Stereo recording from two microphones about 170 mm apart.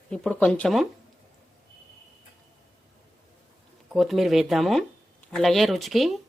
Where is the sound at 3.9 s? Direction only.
Centre (ahead or behind).